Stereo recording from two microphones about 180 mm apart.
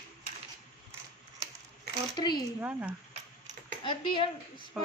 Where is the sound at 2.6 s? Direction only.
10° right (ahead or behind).